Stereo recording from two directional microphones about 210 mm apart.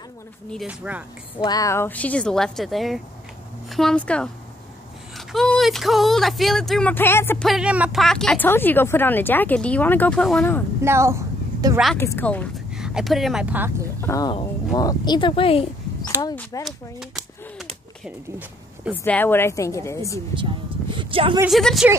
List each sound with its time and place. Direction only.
0.5 s speech: 5° right (ahead or behind)
1.4 s speech: 15° left (ahead or behind)
7.4 s speech: 5° right (ahead or behind)
10.8 s a sound: 15° right (ahead or behind)
12.0 s speech: 10° left (ahead or behind)
12.7 s speech: 5° right (ahead or behind)
14.0 s speech: 15° left (ahead or behind)
16.5 s speech: 15° left (ahead or behind)
19.0 s speech: 10° left (ahead or behind)
20.9 s a sound: 25° right (ahead or behind)
21.5 s speech: centre (ahead or behind)